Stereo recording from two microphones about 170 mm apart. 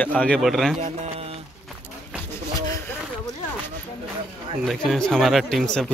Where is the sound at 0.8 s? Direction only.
35° right (ahead or behind).